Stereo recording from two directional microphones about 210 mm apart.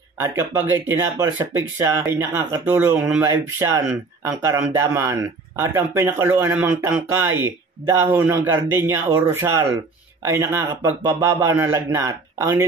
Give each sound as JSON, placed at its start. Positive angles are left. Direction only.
{"t": 0.2, "sound": "speech", "side_deg": -15}